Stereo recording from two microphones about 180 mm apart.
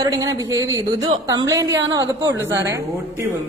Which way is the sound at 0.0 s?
20° right (ahead or behind).